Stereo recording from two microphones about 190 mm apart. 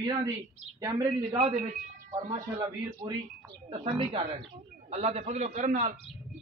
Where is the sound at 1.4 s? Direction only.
35° right (ahead or behind).